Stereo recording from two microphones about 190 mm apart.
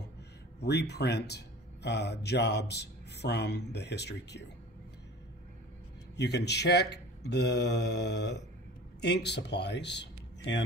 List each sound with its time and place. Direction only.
0.6 s speech: 60° left (ahead or behind)
6.1 s speech: 60° left (ahead or behind)